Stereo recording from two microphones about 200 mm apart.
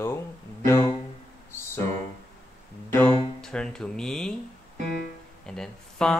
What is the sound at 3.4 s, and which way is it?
Speech, 5° left (ahead or behind).